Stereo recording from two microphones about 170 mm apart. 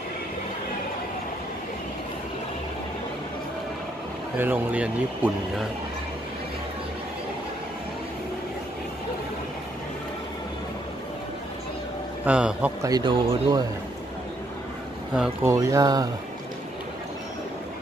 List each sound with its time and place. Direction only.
4.4 s speech: 10° right (ahead or behind)
12.3 s speech: 5° right (ahead or behind)
12.8 s speech: 25° right (ahead or behind)
15.1 s speech: 5° right (ahead or behind)
15.5 s speech: 20° right (ahead or behind)